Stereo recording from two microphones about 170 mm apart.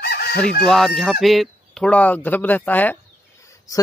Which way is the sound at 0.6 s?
Centre (ahead or behind).